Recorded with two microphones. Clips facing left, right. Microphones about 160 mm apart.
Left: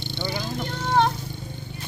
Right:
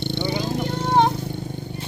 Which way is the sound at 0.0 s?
65° right (ahead or behind).